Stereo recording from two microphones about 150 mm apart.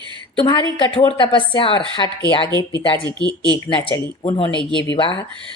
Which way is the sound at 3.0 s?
30° right (ahead or behind).